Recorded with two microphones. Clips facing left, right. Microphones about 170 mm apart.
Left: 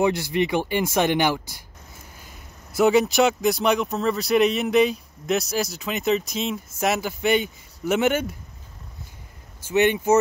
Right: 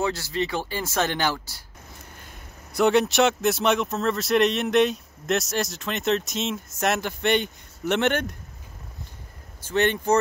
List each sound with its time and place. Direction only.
0.0 s speech: 15° left (ahead or behind)
2.1 s speech: 5° left (ahead or behind)
9.7 s speech: 10° left (ahead or behind)